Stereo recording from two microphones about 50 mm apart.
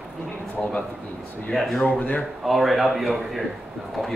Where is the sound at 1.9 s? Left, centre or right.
Left.